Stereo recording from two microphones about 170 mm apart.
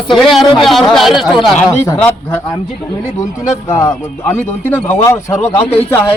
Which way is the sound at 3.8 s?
15° left (ahead or behind).